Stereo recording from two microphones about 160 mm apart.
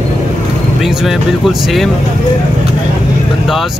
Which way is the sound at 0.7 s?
Centre (ahead or behind).